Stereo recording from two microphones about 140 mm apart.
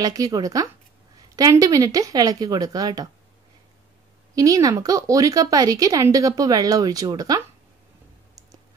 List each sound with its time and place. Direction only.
0.0 s speech: 25° right (ahead or behind)
4.4 s speech: 25° right (ahead or behind)